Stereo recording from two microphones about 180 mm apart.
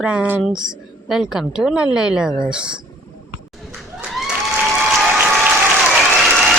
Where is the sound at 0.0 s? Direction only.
5° right (ahead or behind).